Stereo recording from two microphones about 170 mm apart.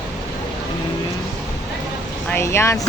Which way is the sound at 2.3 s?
15° left (ahead or behind).